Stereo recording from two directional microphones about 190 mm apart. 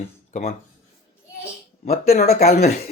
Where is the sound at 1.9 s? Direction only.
55° left (ahead or behind).